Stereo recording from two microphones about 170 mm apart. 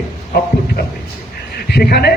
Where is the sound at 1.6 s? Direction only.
70° left (ahead or behind).